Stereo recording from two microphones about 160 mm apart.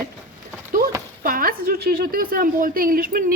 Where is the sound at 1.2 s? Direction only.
60° right (ahead or behind).